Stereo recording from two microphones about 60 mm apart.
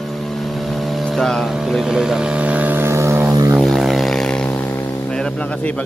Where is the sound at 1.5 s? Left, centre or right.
Centre.